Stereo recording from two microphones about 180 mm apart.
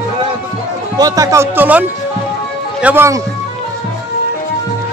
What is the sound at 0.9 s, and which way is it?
Speech, 20° right (ahead or behind).